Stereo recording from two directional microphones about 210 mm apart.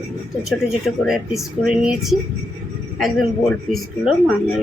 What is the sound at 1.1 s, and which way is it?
A woman's voice, 5° right (ahead or behind).